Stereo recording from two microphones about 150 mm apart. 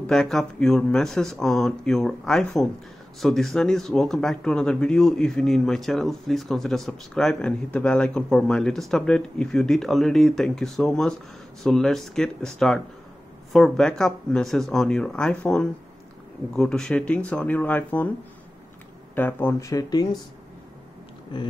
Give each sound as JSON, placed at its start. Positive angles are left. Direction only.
{"t": 0.0, "sound": "speech", "side_deg": 5}
{"t": 19.1, "sound": "speech", "side_deg": 15}
{"t": 21.3, "sound": "speech", "side_deg": 30}